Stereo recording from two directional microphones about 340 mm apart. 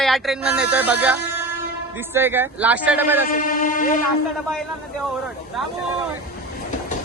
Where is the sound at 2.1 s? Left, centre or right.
Centre.